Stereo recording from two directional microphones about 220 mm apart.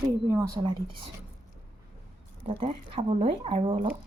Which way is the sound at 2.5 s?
25° right (ahead or behind).